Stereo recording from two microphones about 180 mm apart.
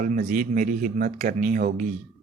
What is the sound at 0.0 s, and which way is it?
Speech, 50° right (ahead or behind).